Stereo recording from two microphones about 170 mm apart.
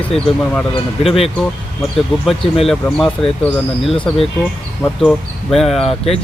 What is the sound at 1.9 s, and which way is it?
Speech, centre (ahead or behind).